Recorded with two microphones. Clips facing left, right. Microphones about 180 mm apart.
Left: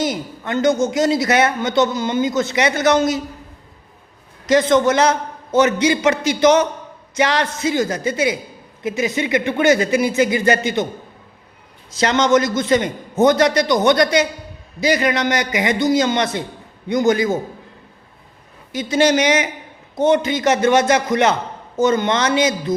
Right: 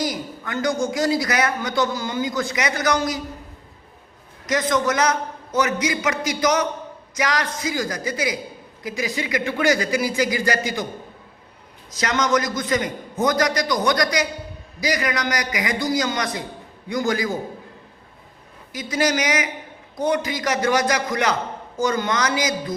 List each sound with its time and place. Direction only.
0.0 s a woman's voice: 25° left (ahead or behind)
4.4 s a woman's voice: 30° left (ahead or behind)
11.9 s a woman's voice: 30° left (ahead or behind)
18.7 s a woman's voice: 25° left (ahead or behind)